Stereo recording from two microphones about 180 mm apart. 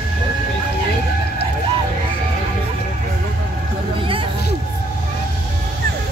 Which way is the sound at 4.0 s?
30° right (ahead or behind).